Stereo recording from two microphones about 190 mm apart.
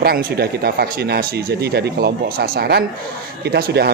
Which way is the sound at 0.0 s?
55° right (ahead or behind).